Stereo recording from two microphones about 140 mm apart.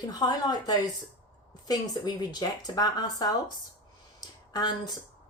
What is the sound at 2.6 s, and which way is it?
Speech, 30° left (ahead or behind).